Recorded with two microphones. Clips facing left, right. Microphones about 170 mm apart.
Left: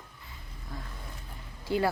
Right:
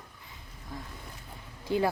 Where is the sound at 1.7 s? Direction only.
20° right (ahead or behind).